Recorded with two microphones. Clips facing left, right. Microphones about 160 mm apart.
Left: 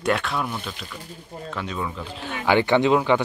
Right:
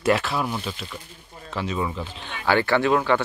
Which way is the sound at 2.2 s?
15° left (ahead or behind).